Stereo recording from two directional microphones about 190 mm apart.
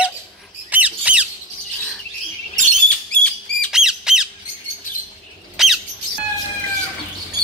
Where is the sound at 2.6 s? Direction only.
40° right (ahead or behind).